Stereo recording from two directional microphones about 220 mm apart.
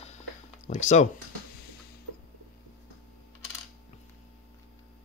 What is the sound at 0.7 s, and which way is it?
Speech, 30° left (ahead or behind).